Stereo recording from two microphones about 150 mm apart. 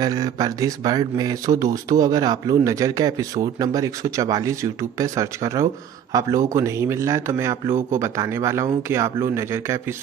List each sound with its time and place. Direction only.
0.0 s speech: 25° right (ahead or behind)